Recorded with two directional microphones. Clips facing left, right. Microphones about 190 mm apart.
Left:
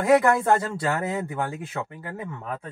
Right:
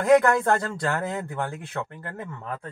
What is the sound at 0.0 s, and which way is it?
Speech, 5° left (ahead or behind).